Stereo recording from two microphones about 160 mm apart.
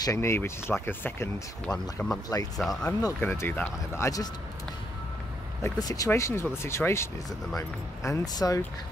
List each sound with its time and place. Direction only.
0.0 s speech: 20° left (ahead or behind)
2.6 s speech: centre (ahead or behind)
3.0 s speech: 15° left (ahead or behind)
5.6 s speech: 20° left (ahead or behind)